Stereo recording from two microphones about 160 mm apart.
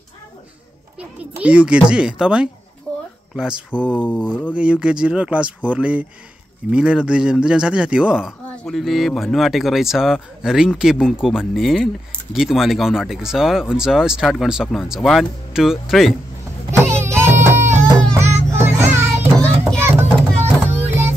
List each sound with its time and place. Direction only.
0.9 s a child's voice: 10° right (ahead or behind)
2.9 s a sound: 10° left (ahead or behind)
3.3 s speech: 5° right (ahead or behind)
3.8 s a sound: 10° left (ahead or behind)
4.6 s a child's voice: 5° right (ahead or behind)
16.7 s baby cry: 15° right (ahead or behind)
18.1 s music: 15° right (ahead or behind)
20.3 s music: 15° right (ahead or behind)